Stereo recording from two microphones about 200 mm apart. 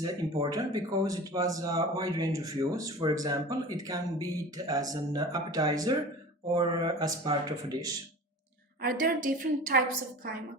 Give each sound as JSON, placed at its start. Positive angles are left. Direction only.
{"t": 0.0, "sound": "speech", "side_deg": -20}
{"t": 8.8, "sound": "a woman's voice", "side_deg": -45}